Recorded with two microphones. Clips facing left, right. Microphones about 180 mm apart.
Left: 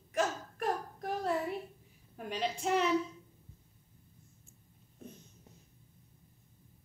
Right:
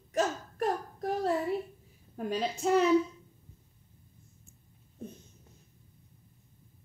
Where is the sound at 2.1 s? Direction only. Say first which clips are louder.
Right 4 dB; 40° right (ahead or behind).